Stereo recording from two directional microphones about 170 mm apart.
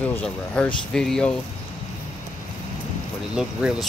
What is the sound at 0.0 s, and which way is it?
Speech, 5° left (ahead or behind).